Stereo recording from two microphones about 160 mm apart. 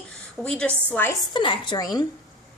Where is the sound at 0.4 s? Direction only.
5° left (ahead or behind).